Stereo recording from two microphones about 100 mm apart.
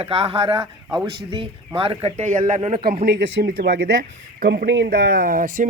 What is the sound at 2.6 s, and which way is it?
Speech, 90° right.